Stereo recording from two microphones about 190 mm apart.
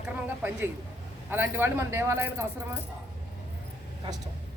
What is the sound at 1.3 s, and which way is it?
A man's voice, 10° right (ahead or behind).